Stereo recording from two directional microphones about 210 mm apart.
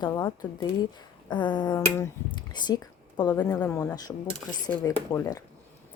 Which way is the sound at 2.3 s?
20° left (ahead or behind).